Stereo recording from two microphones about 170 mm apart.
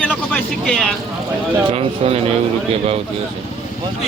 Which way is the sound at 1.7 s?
35° right (ahead or behind).